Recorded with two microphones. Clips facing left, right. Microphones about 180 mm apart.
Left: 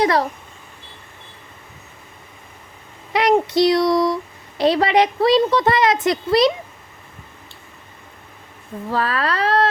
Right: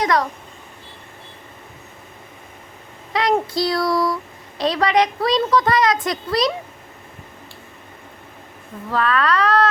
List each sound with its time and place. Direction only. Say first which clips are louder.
0.0 s speech: left 2 dB; 30° left (ahead or behind)
3.1 s speech: left 3 dB; 25° left (ahead or behind)
8.9 s speech: right 2 dB; 30° left (ahead or behind)